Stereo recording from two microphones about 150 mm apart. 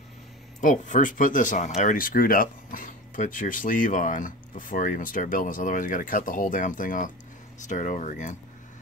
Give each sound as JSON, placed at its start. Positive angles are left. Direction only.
{"t": 0.6, "sound": "speech", "side_deg": 60}